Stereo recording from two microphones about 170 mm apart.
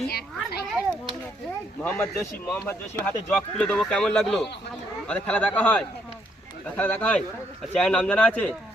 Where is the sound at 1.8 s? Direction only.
10° left (ahead or behind).